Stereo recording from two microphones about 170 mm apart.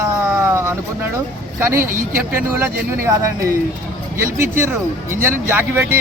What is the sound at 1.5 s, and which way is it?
Speech, 15° right (ahead or behind).